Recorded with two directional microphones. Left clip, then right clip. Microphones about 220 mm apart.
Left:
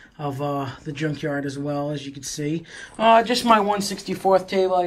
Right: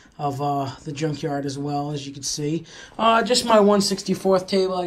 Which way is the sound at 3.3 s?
55° right (ahead or behind).